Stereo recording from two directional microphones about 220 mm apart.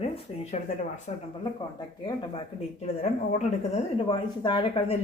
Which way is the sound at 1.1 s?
30° left (ahead or behind).